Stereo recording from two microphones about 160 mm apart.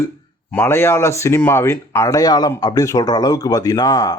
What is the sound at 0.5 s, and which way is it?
Speech, 15° left (ahead or behind).